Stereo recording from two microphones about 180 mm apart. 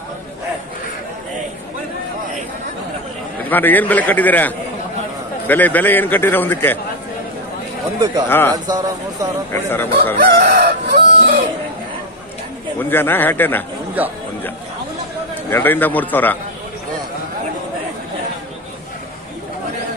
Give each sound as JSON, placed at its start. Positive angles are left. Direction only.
{"t": 3.4, "sound": "a man's voice", "side_deg": 10}
{"t": 8.3, "sound": "a man's voice", "side_deg": 10}
{"t": 8.6, "sound": "speech", "side_deg": -20}
{"t": 9.5, "sound": "a man's voice", "side_deg": 10}
{"t": 10.3, "sound": "chicken", "side_deg": -70}
{"t": 12.7, "sound": "a man's voice", "side_deg": 10}
{"t": 14.0, "sound": "speech", "side_deg": -10}
{"t": 15.5, "sound": "a man's voice", "side_deg": 10}